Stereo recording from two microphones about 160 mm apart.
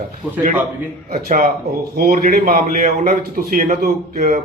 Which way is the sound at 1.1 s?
65° right (ahead or behind).